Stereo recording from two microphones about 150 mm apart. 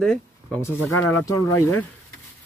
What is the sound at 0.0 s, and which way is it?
Speech, 5° left (ahead or behind).